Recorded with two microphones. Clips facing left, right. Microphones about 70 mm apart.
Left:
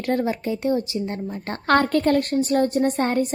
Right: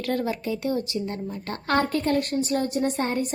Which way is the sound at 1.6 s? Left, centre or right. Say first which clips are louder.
Left 5 dB; left.